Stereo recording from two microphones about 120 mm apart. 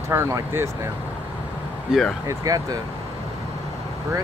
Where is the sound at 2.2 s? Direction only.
30° right (ahead or behind).